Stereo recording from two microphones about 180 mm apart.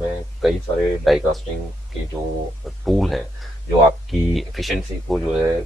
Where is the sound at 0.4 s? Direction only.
Centre (ahead or behind).